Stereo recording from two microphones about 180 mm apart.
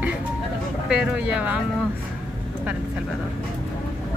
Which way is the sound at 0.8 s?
5° right (ahead or behind).